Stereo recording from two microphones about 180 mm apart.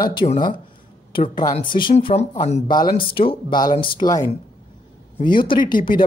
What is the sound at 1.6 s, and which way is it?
Speech, 25° left (ahead or behind).